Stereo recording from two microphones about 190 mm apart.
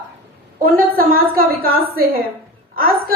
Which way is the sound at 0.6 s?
50° right (ahead or behind).